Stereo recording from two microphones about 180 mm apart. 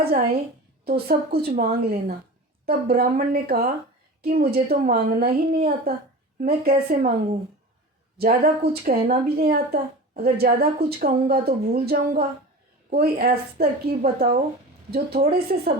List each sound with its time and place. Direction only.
0.0 s a woman's voice: 60° right (ahead or behind)
8.2 s a woman's voice: 55° right (ahead or behind)